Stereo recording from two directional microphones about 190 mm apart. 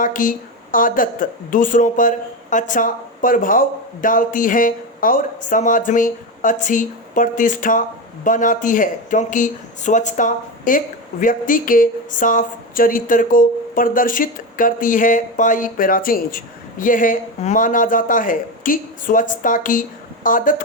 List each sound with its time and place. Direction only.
0.0 s speech: 45° left (ahead or behind)